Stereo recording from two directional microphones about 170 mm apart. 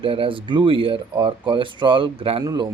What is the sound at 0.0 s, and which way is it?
Speech, 30° right (ahead or behind).